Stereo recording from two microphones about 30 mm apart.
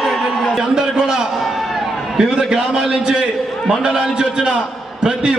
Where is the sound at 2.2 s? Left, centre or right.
Right.